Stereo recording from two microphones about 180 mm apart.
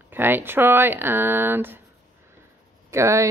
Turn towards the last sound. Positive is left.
turn(degrees=-15)  # may be behind; listen again after turning